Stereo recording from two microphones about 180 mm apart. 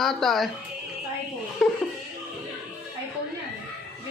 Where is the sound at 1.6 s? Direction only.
Centre (ahead or behind).